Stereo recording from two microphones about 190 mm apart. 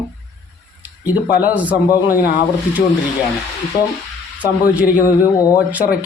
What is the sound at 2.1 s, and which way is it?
Speech, 45° left (ahead or behind).